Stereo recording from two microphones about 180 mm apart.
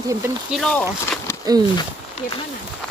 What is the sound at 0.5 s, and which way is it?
Speech, 5° left (ahead or behind).